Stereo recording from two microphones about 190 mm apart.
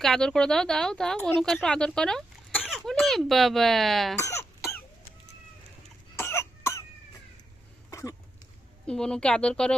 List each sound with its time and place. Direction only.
0.0 s speech: 5° left (ahead or behind)
4.2 s cough: 15° left (ahead or behind)
6.1 s cough: 15° left (ahead or behind)
7.9 s a sound: 15° left (ahead or behind)
8.9 s speech: 5° left (ahead or behind)